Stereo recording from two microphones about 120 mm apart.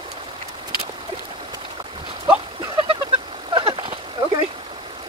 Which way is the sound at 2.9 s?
50° right (ahead or behind).